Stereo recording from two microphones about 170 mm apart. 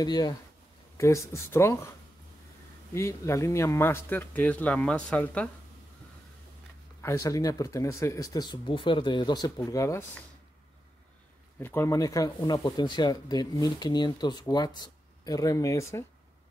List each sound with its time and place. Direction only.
0.0 s speech: 25° left (ahead or behind)
2.9 s speech: 15° left (ahead or behind)
7.0 s speech: 20° left (ahead or behind)
11.6 s speech: 15° left (ahead or behind)